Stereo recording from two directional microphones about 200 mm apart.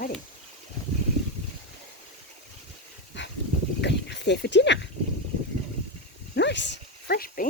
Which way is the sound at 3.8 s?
60° left (ahead or behind).